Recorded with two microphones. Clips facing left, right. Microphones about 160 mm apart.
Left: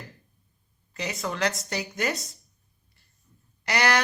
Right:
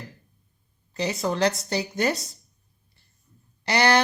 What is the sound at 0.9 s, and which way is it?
Speech, 30° right (ahead or behind).